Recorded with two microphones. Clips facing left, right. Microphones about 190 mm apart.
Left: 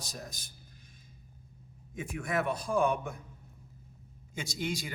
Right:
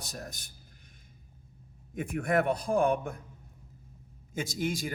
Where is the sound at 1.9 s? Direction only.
55° right (ahead or behind).